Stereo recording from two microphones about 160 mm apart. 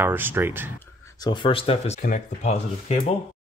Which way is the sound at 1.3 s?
35° left (ahead or behind).